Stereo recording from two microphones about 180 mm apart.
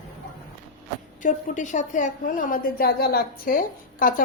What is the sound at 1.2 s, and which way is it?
A woman's voice, 45° left (ahead or behind).